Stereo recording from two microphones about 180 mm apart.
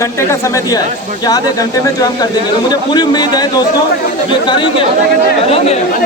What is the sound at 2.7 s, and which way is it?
A man's voice, 25° left (ahead or behind).